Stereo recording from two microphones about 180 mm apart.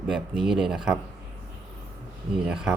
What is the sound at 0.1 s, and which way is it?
Speech, centre (ahead or behind).